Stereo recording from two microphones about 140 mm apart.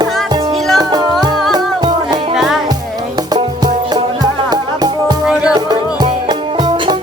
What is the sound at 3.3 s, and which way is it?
Music, 30° right (ahead or behind).